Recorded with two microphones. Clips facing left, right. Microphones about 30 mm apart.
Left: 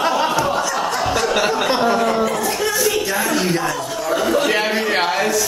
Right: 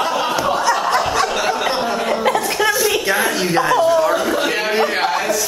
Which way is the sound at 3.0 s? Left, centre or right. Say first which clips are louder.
Right 2 dB; centre.